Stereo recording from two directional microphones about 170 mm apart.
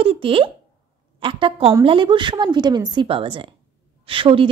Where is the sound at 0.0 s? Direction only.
30° right (ahead or behind).